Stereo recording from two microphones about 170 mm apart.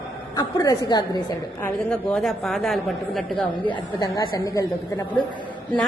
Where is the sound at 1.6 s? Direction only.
5° left (ahead or behind).